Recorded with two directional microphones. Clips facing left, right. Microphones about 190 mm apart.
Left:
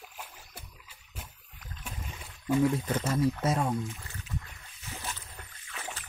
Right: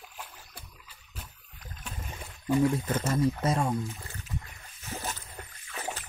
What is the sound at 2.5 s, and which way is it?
Speech, centre (ahead or behind).